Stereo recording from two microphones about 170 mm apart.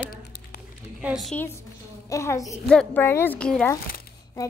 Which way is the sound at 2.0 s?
20° left (ahead or behind).